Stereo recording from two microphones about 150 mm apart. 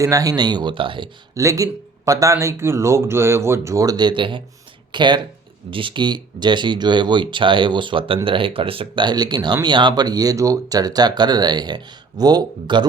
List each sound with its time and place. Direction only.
0.0 s speech: 20° right (ahead or behind)
1.4 s speech: 20° right (ahead or behind)